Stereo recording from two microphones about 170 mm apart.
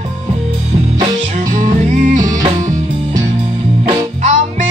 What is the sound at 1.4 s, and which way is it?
Music, 50° right (ahead or behind).